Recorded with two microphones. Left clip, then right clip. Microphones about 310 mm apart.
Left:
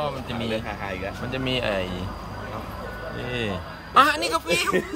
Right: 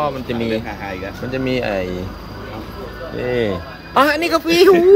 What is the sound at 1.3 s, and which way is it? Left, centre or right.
Speech, left.